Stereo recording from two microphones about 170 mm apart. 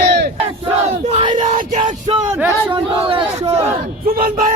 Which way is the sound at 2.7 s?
30° right (ahead or behind).